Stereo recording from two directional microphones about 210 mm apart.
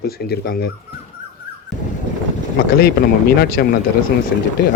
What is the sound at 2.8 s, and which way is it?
Speech, 45° left (ahead or behind).